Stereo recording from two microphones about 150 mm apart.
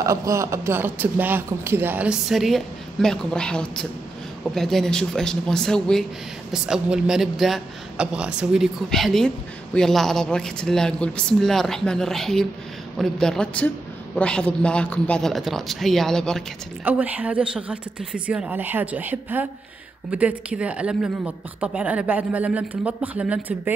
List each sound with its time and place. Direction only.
0.0 s a man's voice: 20° right (ahead or behind); by 16.4 s 5° left (ahead or behind)
16.8 s speech: 10° right (ahead or behind)